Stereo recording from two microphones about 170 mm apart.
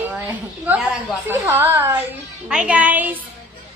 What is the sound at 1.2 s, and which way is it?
A woman's voice, 15° right (ahead or behind).